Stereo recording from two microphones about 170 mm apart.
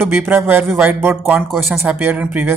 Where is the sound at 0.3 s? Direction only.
15° right (ahead or behind).